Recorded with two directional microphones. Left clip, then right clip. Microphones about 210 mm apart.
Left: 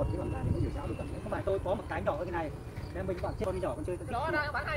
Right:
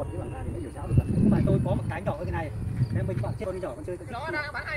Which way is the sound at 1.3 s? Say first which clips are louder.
Right 3 dB; 40° right (ahead or behind).